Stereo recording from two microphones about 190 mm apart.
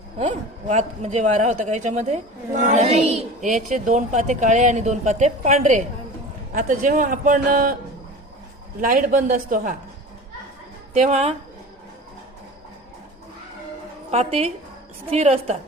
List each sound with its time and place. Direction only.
0.3 s a man's voice: 35° right (ahead or behind)
8.8 s a man's voice: 45° right (ahead or behind)
10.9 s speech: 35° right (ahead or behind)
14.1 s speech: 30° right (ahead or behind)